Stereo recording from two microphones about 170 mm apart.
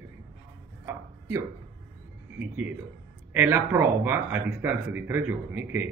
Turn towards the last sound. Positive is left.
turn(degrees=-10)  # may be behind; listen again after turning